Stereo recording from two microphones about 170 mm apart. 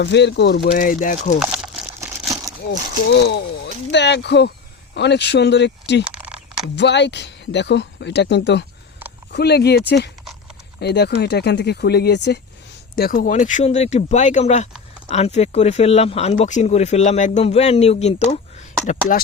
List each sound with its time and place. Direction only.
0.0 s speech: 90° left
0.7 s speech: 50° left (ahead or behind)
1.4 s crumpling: 5° right (ahead or behind)
1.9 s crumpling: 15° right (ahead or behind)
3.1 s speech: 80° left
6.1 s a sound: 5° right (ahead or behind)
6.7 s speech: 90° left
9.3 s speech: 75° left (ahead or behind)
13.0 s speech: 60° left (ahead or behind)